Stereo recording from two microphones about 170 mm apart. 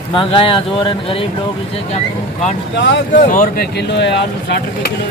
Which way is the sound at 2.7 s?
90° left.